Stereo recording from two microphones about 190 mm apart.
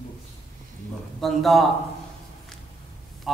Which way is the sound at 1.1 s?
Centre (ahead or behind).